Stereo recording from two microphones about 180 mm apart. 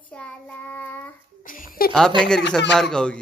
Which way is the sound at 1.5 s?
50° left (ahead or behind).